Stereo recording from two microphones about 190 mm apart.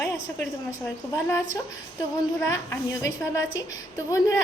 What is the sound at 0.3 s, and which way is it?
A woman's voice, 15° left (ahead or behind).